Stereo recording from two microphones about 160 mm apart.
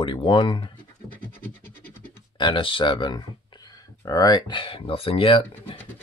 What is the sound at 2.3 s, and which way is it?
Speech, 30° left (ahead or behind).